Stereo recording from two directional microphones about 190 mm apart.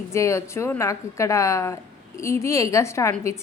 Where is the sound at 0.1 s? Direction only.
15° left (ahead or behind).